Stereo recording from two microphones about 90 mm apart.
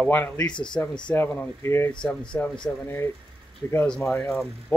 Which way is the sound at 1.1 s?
25° left (ahead or behind).